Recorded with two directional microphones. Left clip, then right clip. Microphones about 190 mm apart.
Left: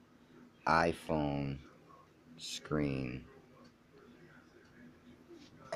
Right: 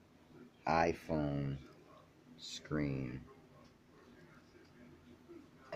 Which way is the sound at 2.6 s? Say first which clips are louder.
Left 3 dB; 20° left (ahead or behind).